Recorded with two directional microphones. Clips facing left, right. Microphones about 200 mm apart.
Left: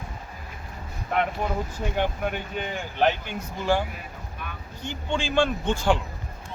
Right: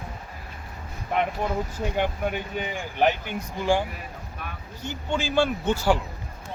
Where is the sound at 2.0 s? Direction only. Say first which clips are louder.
Even; 10° right (ahead or behind).